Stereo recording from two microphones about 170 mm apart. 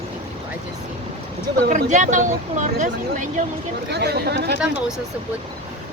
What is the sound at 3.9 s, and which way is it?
Speech, 75° right (ahead or behind).